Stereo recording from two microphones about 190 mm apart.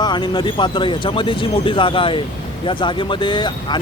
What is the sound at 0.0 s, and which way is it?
Speech, 25° left (ahead or behind).